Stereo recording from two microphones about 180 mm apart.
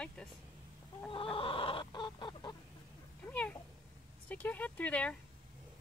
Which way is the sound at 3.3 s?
5° left (ahead or behind).